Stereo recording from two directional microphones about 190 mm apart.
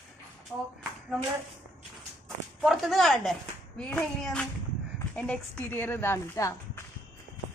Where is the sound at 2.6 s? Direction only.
Centre (ahead or behind); by 6.8 s 15° left (ahead or behind).